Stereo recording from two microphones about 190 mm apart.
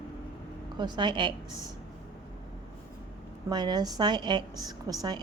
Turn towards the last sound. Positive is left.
turn(degrees=-20)  # may be behind; listen again after turning